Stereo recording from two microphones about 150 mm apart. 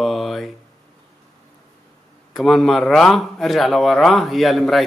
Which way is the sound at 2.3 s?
Centre (ahead or behind).